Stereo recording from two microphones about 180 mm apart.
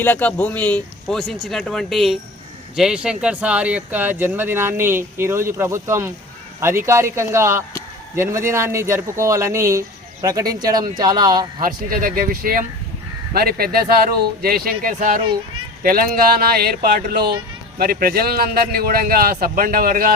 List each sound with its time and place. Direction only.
0.0 s speech: 10° left (ahead or behind); by 11.4 s 20° right (ahead or behind)
11.6 s a man's voice: 50° right (ahead or behind)
15.2 s a child's voice: 30° right (ahead or behind)
15.8 s a man's voice: 55° right (ahead or behind)